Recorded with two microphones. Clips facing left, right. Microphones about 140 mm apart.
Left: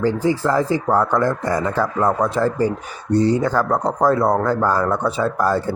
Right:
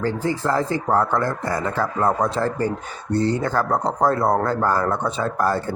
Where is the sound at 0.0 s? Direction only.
15° left (ahead or behind).